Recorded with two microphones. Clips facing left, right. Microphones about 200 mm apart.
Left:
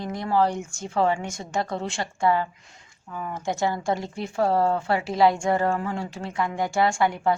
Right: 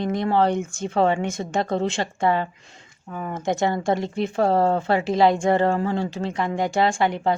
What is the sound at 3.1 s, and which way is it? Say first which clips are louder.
Speech: right 3 dB; 40° right (ahead or behind).